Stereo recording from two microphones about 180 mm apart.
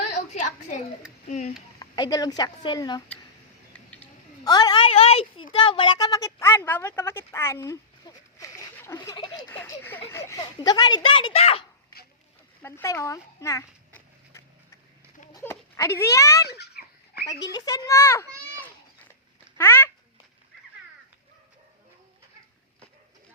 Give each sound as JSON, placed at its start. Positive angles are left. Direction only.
{"t": 1.3, "sound": "speech", "side_deg": 40}
{"t": 1.8, "sound": "speech", "side_deg": 20}
{"t": 4.4, "sound": "a woman's voice", "side_deg": 20}
{"t": 12.6, "sound": "a sound", "side_deg": 15}
{"t": 15.3, "sound": "a child's voice", "side_deg": 15}
{"t": 16.8, "sound": "a sound", "side_deg": 60}
{"t": 17.5, "sound": "a woman's voice", "side_deg": 20}
{"t": 19.5, "sound": "speech", "side_deg": 15}